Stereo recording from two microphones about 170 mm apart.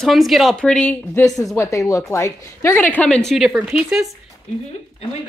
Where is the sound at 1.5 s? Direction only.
20° left (ahead or behind); by 4.0 s 5° right (ahead or behind).